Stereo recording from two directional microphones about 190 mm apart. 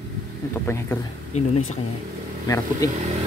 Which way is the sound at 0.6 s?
15° left (ahead or behind).